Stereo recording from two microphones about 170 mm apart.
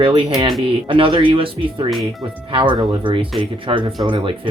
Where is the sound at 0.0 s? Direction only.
30° right (ahead or behind).